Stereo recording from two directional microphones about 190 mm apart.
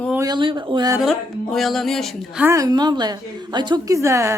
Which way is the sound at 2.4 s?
15° right (ahead or behind).